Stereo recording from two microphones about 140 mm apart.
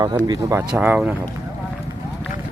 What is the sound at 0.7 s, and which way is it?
Speech, 10° right (ahead or behind).